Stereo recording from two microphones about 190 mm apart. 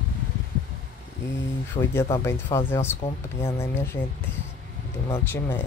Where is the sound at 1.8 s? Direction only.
30° left (ahead or behind).